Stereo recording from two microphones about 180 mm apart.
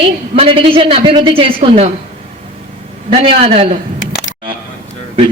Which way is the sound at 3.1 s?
30° right (ahead or behind).